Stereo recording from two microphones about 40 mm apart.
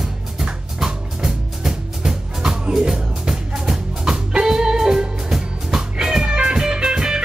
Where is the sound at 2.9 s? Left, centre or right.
Centre.